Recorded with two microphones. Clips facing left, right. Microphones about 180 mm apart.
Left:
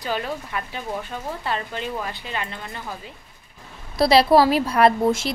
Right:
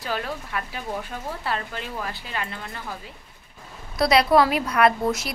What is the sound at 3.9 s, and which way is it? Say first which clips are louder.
A woman's voice: left 3 dB; 30° left (ahead or behind).